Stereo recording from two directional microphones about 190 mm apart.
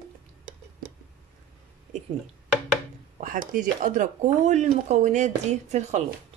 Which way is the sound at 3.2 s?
45° right (ahead or behind).